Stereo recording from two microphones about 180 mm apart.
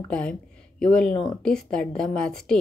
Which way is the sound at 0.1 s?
5° left (ahead or behind).